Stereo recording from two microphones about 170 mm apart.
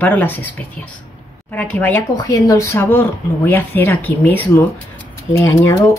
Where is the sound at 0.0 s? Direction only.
10° left (ahead or behind).